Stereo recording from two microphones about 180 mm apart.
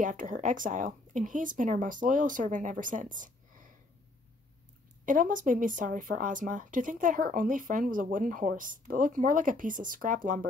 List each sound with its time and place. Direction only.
0.0 s speech: 45° right (ahead or behind)
5.0 s speech: 50° right (ahead or behind)